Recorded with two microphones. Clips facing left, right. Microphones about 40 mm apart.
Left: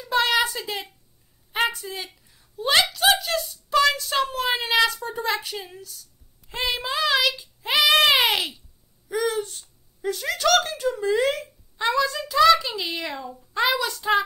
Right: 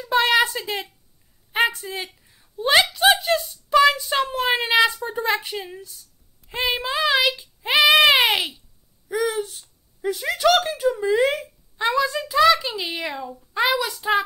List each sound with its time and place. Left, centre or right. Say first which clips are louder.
0.1 s a sound: right 3 dB; centre
0.6 s a child's voice: right 3 dB; centre
1.7 s speech: right 2 dB; right
2.2 s a child's voice: right 2 dB; centre